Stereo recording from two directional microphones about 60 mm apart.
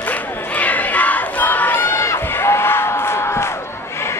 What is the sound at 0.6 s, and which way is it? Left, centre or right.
Battle cry, left.